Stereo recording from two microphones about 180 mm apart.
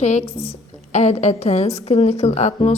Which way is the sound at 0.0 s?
40° left (ahead or behind).